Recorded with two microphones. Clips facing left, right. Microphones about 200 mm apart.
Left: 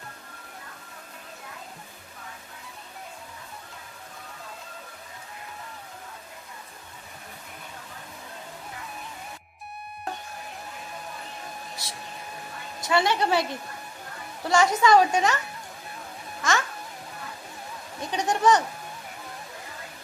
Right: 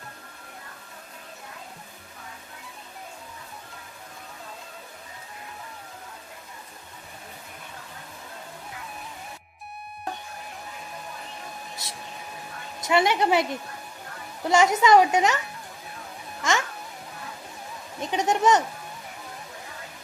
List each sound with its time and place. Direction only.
12.9 s a woman's voice: 20° right (ahead or behind)
16.4 s music: 20° right (ahead or behind)
18.0 s speech: 20° right (ahead or behind)